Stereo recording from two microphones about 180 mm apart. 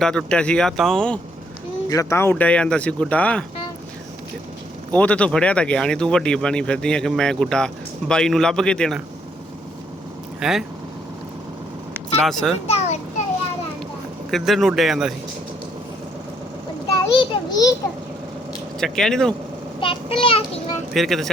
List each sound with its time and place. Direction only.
0.0 s speech: 5° left (ahead or behind)
1.9 s speech: 15° left (ahead or behind)
4.9 s speech: 10° left (ahead or behind)
10.4 s speech: 5° right (ahead or behind)
12.2 s speech: centre (ahead or behind)
12.6 s children playing: 35° left (ahead or behind)
14.3 s speech: centre (ahead or behind)
16.9 s a sound: 20° left (ahead or behind)
18.8 s speech: 5° left (ahead or behind)
19.8 s a child's voice: 30° left (ahead or behind)
20.9 s speech: centre (ahead or behind)